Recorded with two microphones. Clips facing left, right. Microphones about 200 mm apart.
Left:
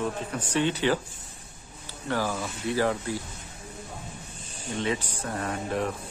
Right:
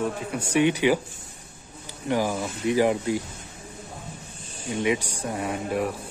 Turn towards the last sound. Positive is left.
turn(degrees=-10)  # may be behind; listen again after turning